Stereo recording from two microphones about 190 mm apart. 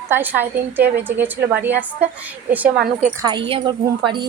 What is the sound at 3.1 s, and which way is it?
Speech, 20° right (ahead or behind).